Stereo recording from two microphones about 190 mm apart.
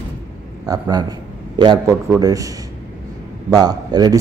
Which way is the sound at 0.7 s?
20° right (ahead or behind).